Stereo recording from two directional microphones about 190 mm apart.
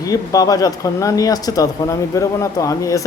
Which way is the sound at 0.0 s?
20° left (ahead or behind).